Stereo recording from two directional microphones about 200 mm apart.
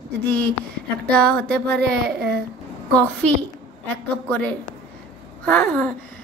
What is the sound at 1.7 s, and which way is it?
Speech, 55° right (ahead or behind).